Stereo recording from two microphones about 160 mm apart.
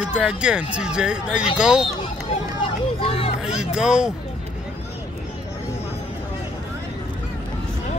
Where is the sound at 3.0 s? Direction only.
35° left (ahead or behind).